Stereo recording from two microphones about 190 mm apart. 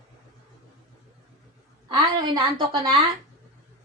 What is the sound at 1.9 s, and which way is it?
A woman's voice, 25° right (ahead or behind).